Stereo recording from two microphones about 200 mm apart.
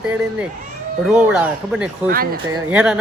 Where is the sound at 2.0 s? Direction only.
50° right (ahead or behind).